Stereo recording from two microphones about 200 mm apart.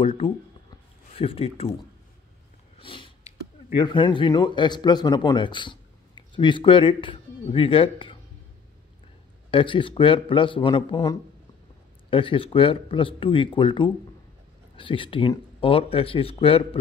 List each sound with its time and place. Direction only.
0.0 s speech: 30° left (ahead or behind)
2.8 s speech: 25° left (ahead or behind)
9.5 s speech: 25° left (ahead or behind)